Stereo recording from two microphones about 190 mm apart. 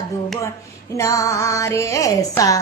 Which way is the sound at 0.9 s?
15° left (ahead or behind).